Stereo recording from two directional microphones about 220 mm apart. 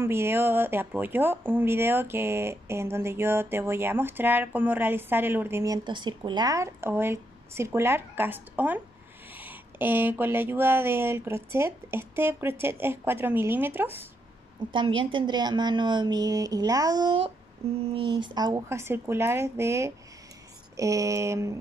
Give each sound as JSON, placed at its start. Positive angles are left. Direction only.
{"t": 0.0, "sound": "speech", "side_deg": -10}
{"t": 14.7, "sound": "a woman's voice", "side_deg": -20}
{"t": 17.6, "sound": "a sound", "side_deg": -25}
{"t": 17.9, "sound": "speech", "side_deg": -25}